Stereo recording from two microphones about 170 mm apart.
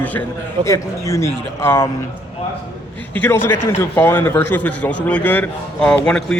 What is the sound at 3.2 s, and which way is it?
A man's voice, 15° left (ahead or behind).